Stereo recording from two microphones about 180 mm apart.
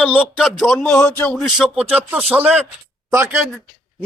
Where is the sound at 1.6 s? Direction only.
5° right (ahead or behind).